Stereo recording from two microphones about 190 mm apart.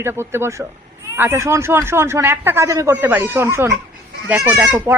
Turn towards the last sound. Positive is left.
turn(degrees=-10)  # may be behind; listen again after turning